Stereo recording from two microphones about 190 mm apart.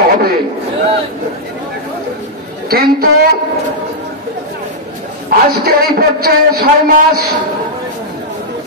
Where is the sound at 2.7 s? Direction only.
55° right (ahead or behind).